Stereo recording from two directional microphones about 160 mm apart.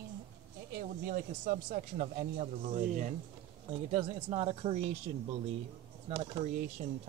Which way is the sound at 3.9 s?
40° right (ahead or behind).